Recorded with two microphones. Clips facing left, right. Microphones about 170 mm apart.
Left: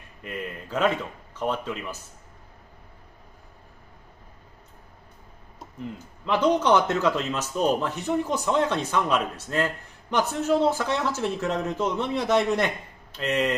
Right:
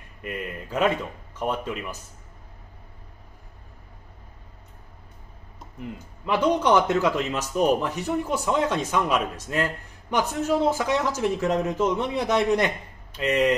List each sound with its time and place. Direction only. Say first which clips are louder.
0.2 s a man's voice: right 1 dB; 10° right (ahead or behind)
6.2 s a man's voice: even; 10° right (ahead or behind)